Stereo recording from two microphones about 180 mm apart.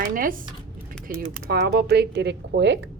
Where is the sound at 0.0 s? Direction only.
50° right (ahead or behind).